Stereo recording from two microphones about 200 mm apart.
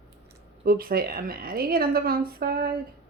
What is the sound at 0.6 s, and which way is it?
Speech, 45° right (ahead or behind).